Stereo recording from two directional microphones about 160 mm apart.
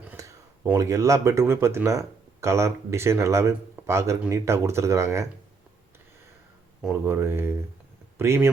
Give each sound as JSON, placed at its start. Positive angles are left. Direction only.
{"t": 0.2, "sound": "speech", "side_deg": -20}
{"t": 7.0, "sound": "speech", "side_deg": -15}